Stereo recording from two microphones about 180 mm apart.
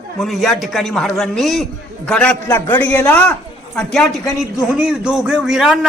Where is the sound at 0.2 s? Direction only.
Centre (ahead or behind).